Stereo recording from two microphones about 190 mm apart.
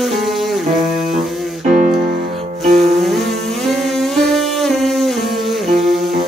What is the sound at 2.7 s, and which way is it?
Music, centre (ahead or behind).